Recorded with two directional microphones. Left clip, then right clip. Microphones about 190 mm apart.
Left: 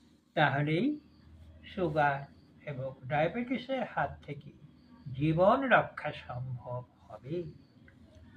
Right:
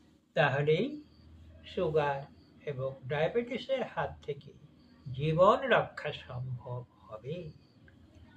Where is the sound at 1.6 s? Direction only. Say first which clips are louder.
Left 1 dB; 25° right (ahead or behind).